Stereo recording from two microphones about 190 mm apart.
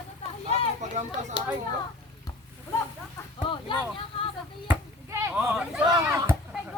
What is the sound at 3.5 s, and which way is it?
Speech, 30° left (ahead or behind).